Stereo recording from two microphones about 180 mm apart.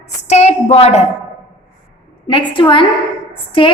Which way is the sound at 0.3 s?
35° left (ahead or behind).